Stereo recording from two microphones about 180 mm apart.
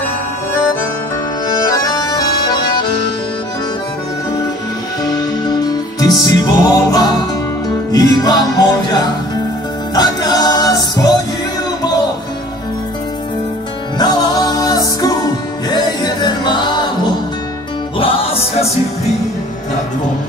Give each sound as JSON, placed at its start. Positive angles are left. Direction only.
{"t": 1.7, "sound": "accordion", "side_deg": 20}
{"t": 5.0, "sound": "music", "side_deg": 20}
{"t": 13.9, "sound": "music", "side_deg": 20}
{"t": 17.9, "sound": "music", "side_deg": 30}